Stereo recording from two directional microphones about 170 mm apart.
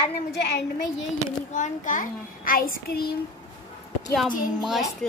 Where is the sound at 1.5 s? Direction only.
50° left (ahead or behind).